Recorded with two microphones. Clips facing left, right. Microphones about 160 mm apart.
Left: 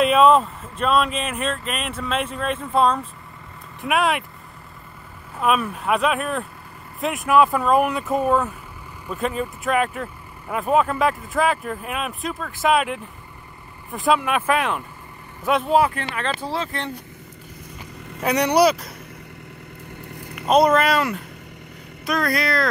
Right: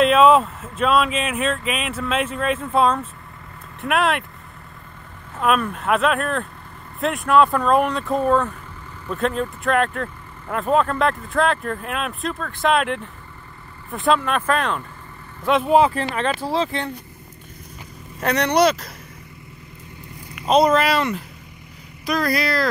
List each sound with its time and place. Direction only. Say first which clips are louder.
0.0 s speech: right 1 dB; centre (ahead or behind)
5.4 s speech: right 1 dB; 5° left (ahead or behind)
14.2 s speech: even; 10° left (ahead or behind)
15.9 s speech: right 5 dB; 30° right (ahead or behind)
16.3 s speech: right 3 dB; 10° right (ahead or behind)
18.2 s speech: even; 10° left (ahead or behind)
20.4 s speech: even; centre (ahead or behind)